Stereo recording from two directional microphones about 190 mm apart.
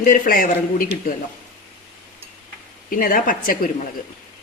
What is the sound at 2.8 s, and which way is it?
A woman's voice, 50° left (ahead or behind).